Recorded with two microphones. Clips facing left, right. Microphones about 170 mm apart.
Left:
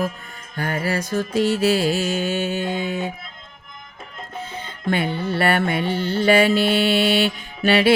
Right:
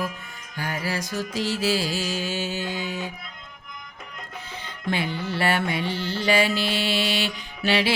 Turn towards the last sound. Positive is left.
turn(degrees=55)  # may be behind; listen again after turning